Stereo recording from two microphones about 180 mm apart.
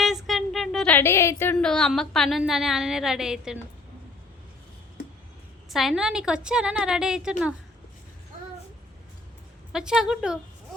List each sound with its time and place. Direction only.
0.0 s speech: centre (ahead or behind)
5.7 s a woman's voice: centre (ahead or behind)
9.7 s a woman's voice: 5° right (ahead or behind)